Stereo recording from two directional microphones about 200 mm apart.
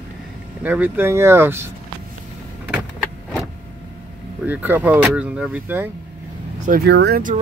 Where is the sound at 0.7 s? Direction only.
10° right (ahead or behind).